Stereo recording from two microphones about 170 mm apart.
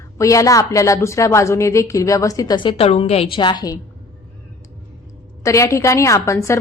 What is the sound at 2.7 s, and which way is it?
A woman's voice, 35° left (ahead or behind).